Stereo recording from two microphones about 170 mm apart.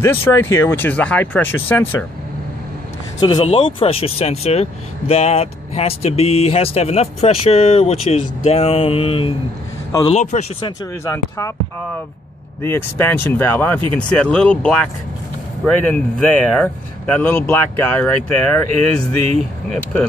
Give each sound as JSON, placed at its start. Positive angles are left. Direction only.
{"t": 0.0, "sound": "speech", "side_deg": 15}
{"t": 3.4, "sound": "speech", "side_deg": 35}
{"t": 10.0, "sound": "speech", "side_deg": 45}
{"t": 11.1, "sound": "speech", "side_deg": 20}
{"t": 12.6, "sound": "speech", "side_deg": 10}
{"t": 19.7, "sound": "speech", "side_deg": 5}